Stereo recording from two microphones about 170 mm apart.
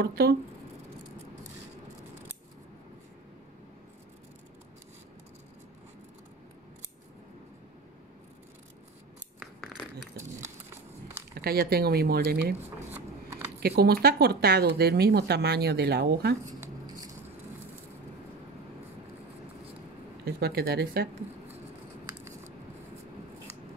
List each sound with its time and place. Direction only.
0.0 s speech: 65° right (ahead or behind)
9.4 s a sound: 5° right (ahead or behind)
11.3 s speech: 65° right (ahead or behind)
12.9 s shuffling cards: 15° right (ahead or behind)
13.6 s speech: 70° right (ahead or behind)
20.2 s speech: 65° right (ahead or behind)